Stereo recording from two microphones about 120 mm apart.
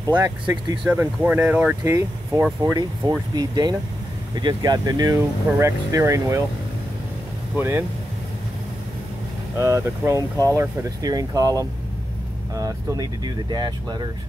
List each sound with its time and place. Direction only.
0.0 s speech: 30° right (ahead or behind)
0.8 s speech: 15° right (ahead or behind)
1.9 s speech: 25° right (ahead or behind)
7.5 s speech: 20° right (ahead or behind)
9.6 s speech: 25° right (ahead or behind)